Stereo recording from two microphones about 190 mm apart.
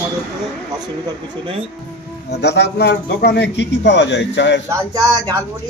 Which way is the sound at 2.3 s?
60° left (ahead or behind).